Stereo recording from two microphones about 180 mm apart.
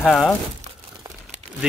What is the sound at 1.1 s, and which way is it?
Crumpling, 20° right (ahead or behind).